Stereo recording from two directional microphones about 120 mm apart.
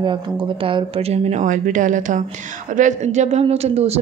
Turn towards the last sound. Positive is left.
turn(degrees=-60)  # may be behind; listen again after turning